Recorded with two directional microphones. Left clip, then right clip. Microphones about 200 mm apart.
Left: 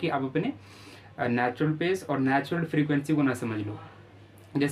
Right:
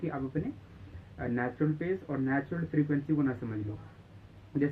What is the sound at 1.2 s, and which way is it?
Speech, 40° left (ahead or behind).